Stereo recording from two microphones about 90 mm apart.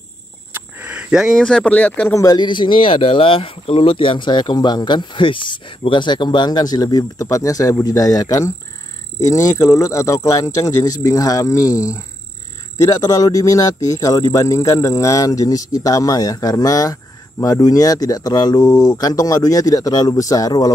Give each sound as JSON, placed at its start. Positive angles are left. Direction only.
{"t": 0.5, "sound": "a sound", "side_deg": -20}
{"t": 1.4, "sound": "speech", "side_deg": 10}
{"t": 2.1, "sound": "speech", "side_deg": 50}